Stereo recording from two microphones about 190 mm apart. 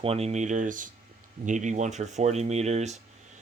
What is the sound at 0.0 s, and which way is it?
Speech, 30° right (ahead or behind).